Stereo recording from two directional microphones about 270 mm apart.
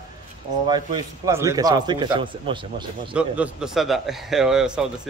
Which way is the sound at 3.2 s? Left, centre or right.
Centre.